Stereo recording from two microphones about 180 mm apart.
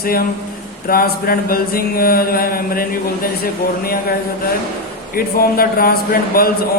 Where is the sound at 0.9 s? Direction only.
55° left (ahead or behind).